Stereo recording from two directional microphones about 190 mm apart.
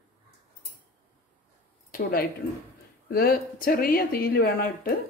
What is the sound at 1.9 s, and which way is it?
Speech, 55° left (ahead or behind).